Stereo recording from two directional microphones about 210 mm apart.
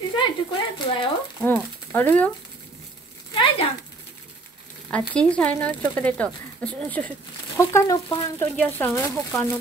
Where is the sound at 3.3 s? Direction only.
25° left (ahead or behind).